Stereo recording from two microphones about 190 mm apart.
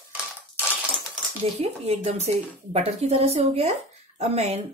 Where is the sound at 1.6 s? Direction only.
35° right (ahead or behind).